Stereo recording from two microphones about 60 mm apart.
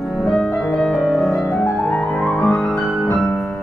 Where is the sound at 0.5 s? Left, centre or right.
Centre.